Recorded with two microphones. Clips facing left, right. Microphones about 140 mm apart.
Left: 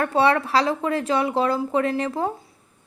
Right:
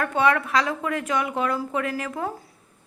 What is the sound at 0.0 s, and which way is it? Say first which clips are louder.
Speech: left 2 dB; 30° left (ahead or behind).